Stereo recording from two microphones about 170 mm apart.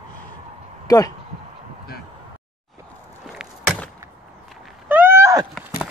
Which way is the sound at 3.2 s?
Centre (ahead or behind).